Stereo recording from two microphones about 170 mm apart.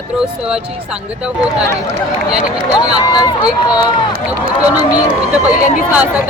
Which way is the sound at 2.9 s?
25° left (ahead or behind).